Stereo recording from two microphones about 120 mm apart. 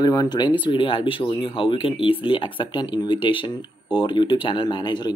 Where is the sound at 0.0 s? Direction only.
35° left (ahead or behind).